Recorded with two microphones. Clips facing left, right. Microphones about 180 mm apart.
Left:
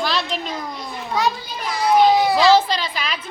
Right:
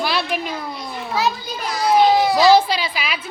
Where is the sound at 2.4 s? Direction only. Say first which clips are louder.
Right 1 dB; 10° right (ahead or behind).